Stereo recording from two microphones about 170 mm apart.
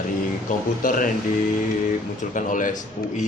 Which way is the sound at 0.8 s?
50° left (ahead or behind).